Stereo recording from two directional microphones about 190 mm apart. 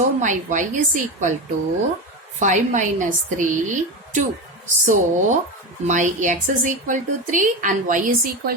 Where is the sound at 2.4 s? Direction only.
40° right (ahead or behind).